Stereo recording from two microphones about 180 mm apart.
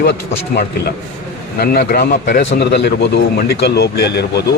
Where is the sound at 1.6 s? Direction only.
55° left (ahead or behind).